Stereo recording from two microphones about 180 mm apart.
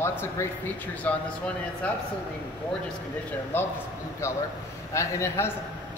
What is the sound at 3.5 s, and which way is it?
Speech, 10° left (ahead or behind).